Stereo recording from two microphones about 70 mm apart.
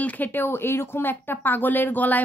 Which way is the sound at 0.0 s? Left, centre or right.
Left.